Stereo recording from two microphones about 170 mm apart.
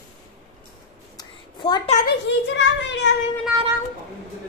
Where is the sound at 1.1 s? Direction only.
25° left (ahead or behind).